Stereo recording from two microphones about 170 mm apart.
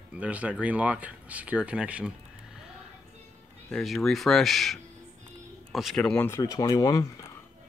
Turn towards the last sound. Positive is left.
turn(degrees=20)  # may be behind; listen again after turning